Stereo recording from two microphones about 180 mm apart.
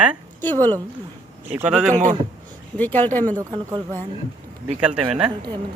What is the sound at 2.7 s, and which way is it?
Speech, 10° left (ahead or behind).